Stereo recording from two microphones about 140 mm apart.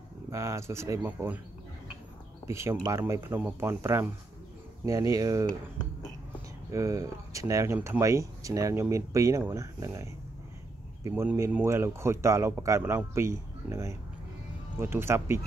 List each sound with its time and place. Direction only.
0.3 s speech: 20° right (ahead or behind)
1.0 s speech: 10° right (ahead or behind)
2.4 s speech: 20° right (ahead or behind)
6.7 s speech: 25° right (ahead or behind)
11.1 s speech: 20° right (ahead or behind)